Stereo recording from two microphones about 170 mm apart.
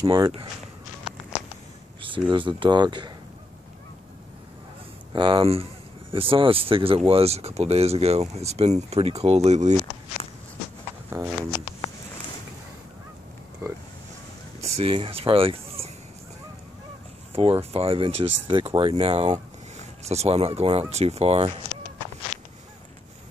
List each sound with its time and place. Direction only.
0.0 s speech: 20° right (ahead or behind)
2.0 s speech: 30° right (ahead or behind)
5.1 s speech: 30° right (ahead or behind)
11.1 s speech: 20° right (ahead or behind)
14.6 s speech: 35° right (ahead or behind)
17.3 s speech: 35° right (ahead or behind)
21.7 s a sound: 25° left (ahead or behind)
22.3 s honk: 40° left (ahead or behind)